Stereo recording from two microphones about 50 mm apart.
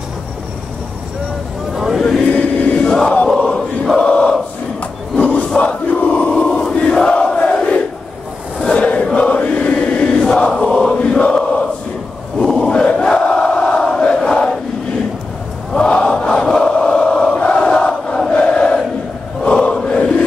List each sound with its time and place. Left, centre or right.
2.0 s chant: centre
2.3 s chant: left
3.3 s chant: centre
4.1 s a sound: centre
5.1 s crowd: left
7.0 s crowd: centre
8.5 s chant: left
11.0 s chant: left
12.5 s crowd: centre
15.7 s crowd: centre
16.7 s chant: left